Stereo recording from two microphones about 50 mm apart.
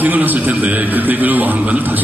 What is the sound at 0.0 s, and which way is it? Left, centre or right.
A man's voice, right.